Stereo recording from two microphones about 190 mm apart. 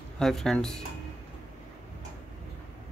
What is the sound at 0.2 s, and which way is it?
Speech, centre (ahead or behind).